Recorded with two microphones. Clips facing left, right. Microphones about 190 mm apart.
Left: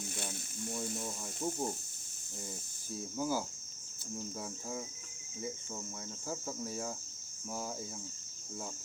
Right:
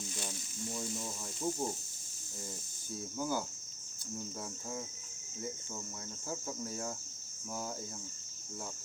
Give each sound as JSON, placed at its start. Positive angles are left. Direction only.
{"t": 0.0, "sound": "a sound", "side_deg": 55}
{"t": 0.9, "sound": "cricket", "side_deg": 0}
{"t": 2.9, "sound": "cricket", "side_deg": 5}
{"t": 6.2, "sound": "cricket", "side_deg": 0}